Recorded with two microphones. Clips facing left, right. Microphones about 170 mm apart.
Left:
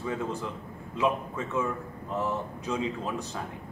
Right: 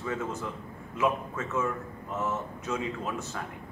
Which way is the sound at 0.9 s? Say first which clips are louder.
Left 1 dB; 15° left (ahead or behind).